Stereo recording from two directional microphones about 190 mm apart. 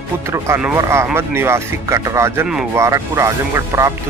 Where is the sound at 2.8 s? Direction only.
15° right (ahead or behind).